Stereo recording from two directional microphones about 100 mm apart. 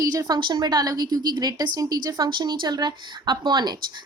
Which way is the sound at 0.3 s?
50° right (ahead or behind).